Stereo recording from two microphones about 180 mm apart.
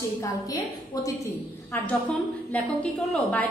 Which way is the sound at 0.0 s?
20° left (ahead or behind).